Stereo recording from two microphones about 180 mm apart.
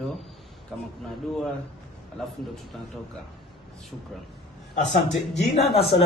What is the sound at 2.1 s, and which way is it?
Speech, centre (ahead or behind).